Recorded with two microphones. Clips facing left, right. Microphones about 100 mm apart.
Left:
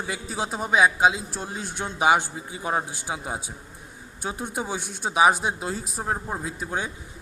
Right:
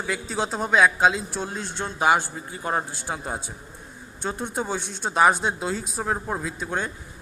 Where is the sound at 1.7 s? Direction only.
15° left (ahead or behind).